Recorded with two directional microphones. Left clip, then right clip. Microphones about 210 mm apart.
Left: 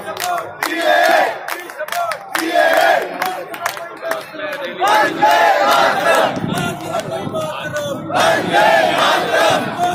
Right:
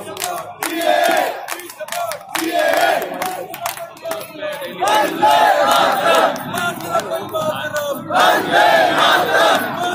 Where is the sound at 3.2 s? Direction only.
10° left (ahead or behind).